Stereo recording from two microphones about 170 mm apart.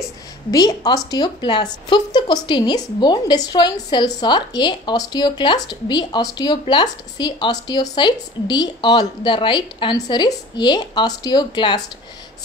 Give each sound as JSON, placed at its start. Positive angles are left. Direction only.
{"t": 0.5, "sound": "a woman's voice", "side_deg": 20}